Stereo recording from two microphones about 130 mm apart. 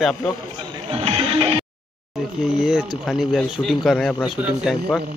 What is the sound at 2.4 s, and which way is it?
A man's voice, 5° right (ahead or behind).